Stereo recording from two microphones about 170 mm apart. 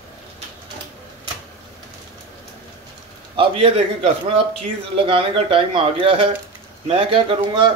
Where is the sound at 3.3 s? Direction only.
35° right (ahead or behind).